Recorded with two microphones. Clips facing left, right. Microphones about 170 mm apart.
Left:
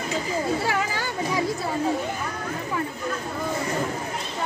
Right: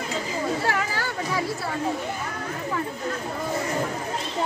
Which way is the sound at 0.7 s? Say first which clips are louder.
Even; 15° left (ahead or behind).